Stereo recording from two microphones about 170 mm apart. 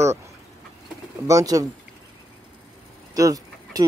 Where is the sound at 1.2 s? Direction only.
20° right (ahead or behind).